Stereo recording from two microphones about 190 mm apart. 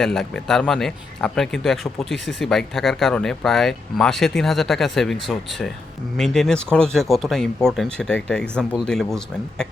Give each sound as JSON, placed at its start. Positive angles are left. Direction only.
{"t": 0.0, "sound": "speech", "side_deg": 0}